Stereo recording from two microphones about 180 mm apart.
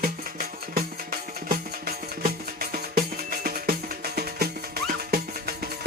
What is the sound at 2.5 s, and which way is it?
Music, 55° right (ahead or behind).